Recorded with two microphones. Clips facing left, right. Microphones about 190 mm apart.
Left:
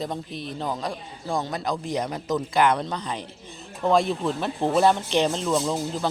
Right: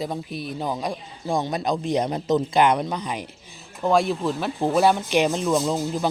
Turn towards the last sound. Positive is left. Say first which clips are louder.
# right 2 dB
turn(degrees=-10)  # may be behind; listen again after turning